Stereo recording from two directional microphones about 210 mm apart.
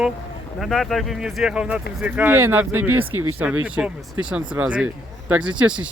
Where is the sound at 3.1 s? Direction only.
90° right.